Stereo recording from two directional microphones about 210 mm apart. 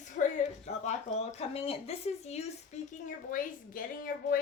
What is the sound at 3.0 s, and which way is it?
A woman's voice, 40° left (ahead or behind).